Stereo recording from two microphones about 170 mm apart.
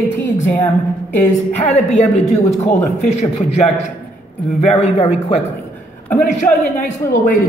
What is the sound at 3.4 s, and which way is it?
Speech, 40° left (ahead or behind).